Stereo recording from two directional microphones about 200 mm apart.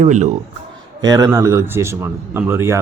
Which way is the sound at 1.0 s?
20° right (ahead or behind).